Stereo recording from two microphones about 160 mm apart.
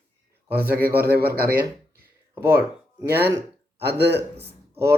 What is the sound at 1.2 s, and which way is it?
Speech, 70° right (ahead or behind).